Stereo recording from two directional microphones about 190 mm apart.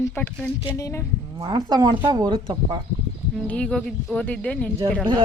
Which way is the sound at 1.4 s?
20° right (ahead or behind).